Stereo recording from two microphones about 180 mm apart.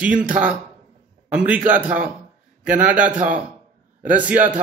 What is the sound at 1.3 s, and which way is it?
A man's voice, 10° right (ahead or behind).